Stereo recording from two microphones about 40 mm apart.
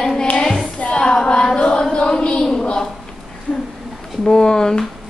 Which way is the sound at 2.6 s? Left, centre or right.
Centre.